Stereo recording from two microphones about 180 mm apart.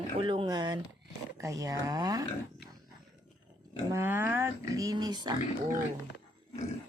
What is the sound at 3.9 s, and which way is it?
Speech, 15° right (ahead or behind).